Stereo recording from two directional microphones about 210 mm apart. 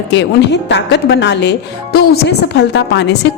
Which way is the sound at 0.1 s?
55° left (ahead or behind).